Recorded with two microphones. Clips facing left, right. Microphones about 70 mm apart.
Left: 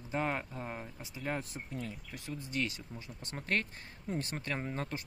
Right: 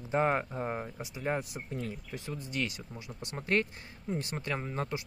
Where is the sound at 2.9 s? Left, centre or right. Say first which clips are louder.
Right 3 dB; centre.